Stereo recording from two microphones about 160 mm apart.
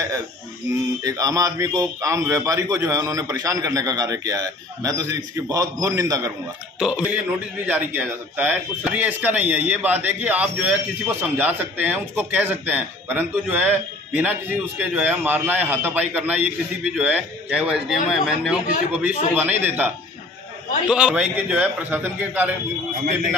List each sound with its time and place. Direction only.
1.0 s a man's voice: 20° right (ahead or behind)
6.8 s speech: 5° right (ahead or behind)